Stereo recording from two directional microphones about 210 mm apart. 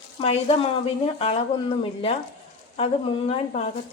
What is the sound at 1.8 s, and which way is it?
A woman's voice, 25° left (ahead or behind).